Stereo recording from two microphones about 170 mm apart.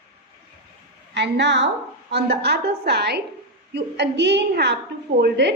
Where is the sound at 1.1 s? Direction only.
90° right.